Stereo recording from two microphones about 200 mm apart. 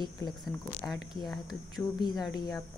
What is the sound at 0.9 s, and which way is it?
Speech, centre (ahead or behind).